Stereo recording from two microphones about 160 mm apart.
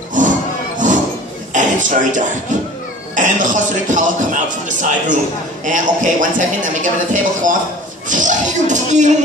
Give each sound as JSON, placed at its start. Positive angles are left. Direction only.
{"t": 0.2, "sound": "music", "side_deg": -55}
{"t": 0.8, "sound": "a sound", "side_deg": -50}
{"t": 3.2, "sound": "a man's voice", "side_deg": -50}